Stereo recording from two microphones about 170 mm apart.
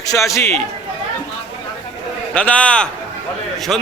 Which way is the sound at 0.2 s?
15° left (ahead or behind).